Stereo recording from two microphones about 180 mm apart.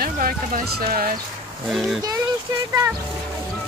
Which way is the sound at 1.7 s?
Centre (ahead or behind).